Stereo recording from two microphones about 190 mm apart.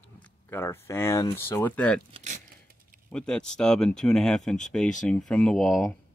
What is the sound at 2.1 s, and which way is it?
Speech, 40° right (ahead or behind).